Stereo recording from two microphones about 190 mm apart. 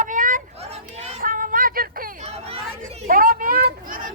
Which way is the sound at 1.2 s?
45° right (ahead or behind).